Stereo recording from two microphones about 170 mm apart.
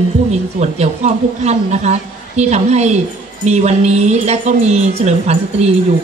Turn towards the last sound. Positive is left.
turn(degrees=-40)  # may be behind; listen again after turning